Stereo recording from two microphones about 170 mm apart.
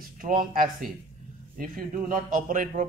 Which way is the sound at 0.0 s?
55° right (ahead or behind).